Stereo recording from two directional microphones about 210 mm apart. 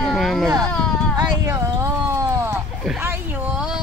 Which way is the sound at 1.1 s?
15° right (ahead or behind).